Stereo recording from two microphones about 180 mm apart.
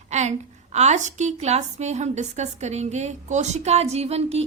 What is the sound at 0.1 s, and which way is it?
A woman's voice, 40° right (ahead or behind).